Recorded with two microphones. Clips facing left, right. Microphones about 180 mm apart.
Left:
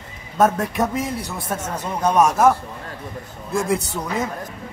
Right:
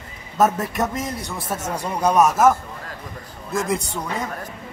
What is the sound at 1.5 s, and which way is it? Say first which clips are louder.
A man's voice: right 1 dB; 10° right (ahead or behind).